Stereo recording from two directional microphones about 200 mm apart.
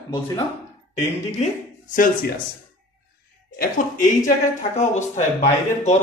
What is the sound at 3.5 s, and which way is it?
Speech, 45° left (ahead or behind).